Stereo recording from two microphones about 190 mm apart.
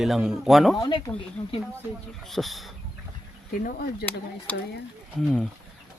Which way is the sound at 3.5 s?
50° left (ahead or behind).